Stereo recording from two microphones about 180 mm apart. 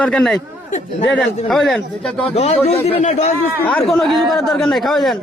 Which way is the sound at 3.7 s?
5° left (ahead or behind).